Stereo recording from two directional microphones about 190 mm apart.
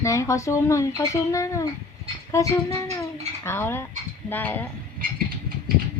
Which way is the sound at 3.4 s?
10° left (ahead or behind).